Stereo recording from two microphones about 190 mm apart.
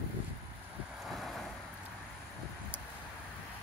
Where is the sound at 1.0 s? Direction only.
Centre (ahead or behind).